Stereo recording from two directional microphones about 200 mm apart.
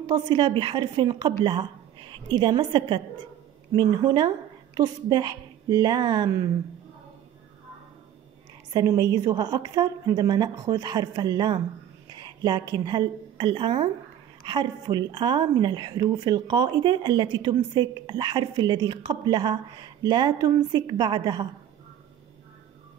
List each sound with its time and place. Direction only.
0.0 s a woman's voice: 25° right (ahead or behind)
8.7 s a woman's voice: 20° right (ahead or behind)
12.1 s a sound: 20° right (ahead or behind)
12.7 s a woman's voice: 20° right (ahead or behind)